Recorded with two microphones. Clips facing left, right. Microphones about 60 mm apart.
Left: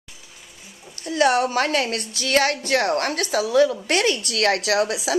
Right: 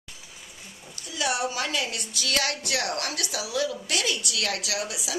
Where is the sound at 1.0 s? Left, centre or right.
Left.